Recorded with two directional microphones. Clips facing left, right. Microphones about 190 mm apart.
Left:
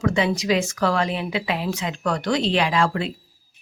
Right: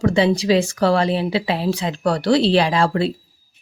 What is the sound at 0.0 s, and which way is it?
Speech, 30° right (ahead or behind).